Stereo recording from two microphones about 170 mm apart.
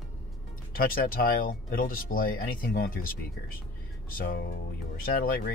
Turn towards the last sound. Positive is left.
turn(degrees=60)  # may be behind; listen again after turning